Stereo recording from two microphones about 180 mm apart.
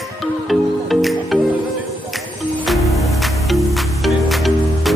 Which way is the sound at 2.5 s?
Centre (ahead or behind).